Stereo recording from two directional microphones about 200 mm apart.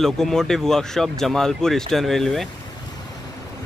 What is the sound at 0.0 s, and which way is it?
Speech, centre (ahead or behind).